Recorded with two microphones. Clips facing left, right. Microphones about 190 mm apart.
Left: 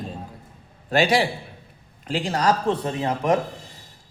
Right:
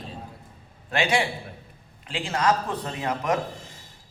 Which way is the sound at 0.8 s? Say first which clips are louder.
Left 5 dB; 35° left (ahead or behind).